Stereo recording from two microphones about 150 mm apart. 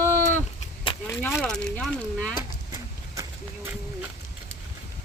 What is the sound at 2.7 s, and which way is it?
Clip-clop, 20° right (ahead or behind).